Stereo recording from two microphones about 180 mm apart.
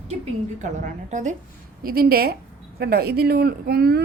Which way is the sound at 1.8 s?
55° right (ahead or behind).